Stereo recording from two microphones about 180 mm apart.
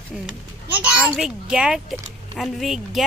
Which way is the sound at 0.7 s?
5° right (ahead or behind).